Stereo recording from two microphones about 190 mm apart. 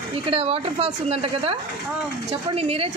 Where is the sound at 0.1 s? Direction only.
30° right (ahead or behind).